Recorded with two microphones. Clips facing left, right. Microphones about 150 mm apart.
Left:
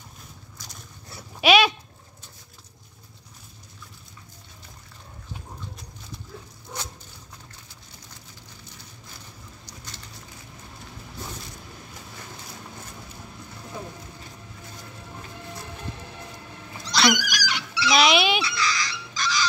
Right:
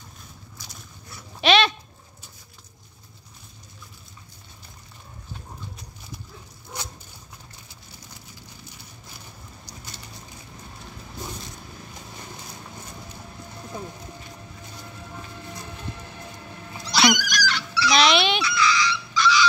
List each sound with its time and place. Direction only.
1.4 s dog: 10° left (ahead or behind)
16.8 s neigh: 5° right (ahead or behind)
17.3 s dog: 10° left (ahead or behind)
17.9 s dog: 5° left (ahead or behind)
18.4 s a sound: 40° left (ahead or behind)